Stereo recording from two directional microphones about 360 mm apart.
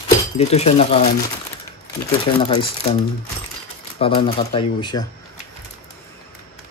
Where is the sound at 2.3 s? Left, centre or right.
Centre.